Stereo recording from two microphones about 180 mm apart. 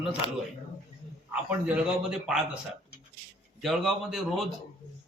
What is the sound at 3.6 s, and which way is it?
Speech, centre (ahead or behind).